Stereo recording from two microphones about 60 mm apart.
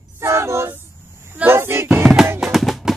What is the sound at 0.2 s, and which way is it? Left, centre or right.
Train, right.